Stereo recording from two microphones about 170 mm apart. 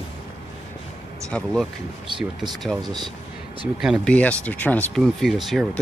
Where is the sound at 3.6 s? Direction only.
5° right (ahead or behind).